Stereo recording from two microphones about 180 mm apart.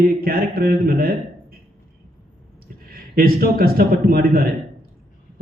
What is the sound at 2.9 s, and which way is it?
A man's voice, 55° right (ahead or behind).